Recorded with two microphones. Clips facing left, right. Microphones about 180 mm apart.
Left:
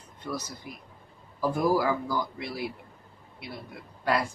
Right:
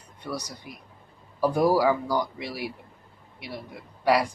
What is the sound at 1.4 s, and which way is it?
Speech, 90° right.